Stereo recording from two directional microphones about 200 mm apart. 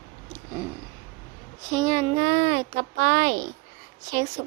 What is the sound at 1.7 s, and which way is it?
Child singing, 20° right (ahead or behind).